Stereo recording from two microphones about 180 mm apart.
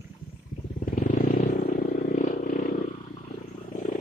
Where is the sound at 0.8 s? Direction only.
45° left (ahead or behind).